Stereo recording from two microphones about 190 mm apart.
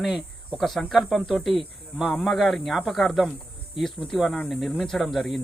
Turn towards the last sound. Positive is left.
turn(degrees=0)  # may be behind; listen again after turning